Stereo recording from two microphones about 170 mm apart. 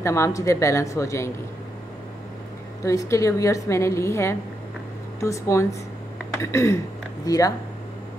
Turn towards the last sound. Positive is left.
turn(degrees=20)  # may be behind; listen again after turning